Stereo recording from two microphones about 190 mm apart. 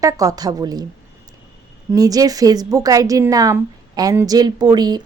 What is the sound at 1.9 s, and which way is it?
A woman's voice, 20° right (ahead or behind).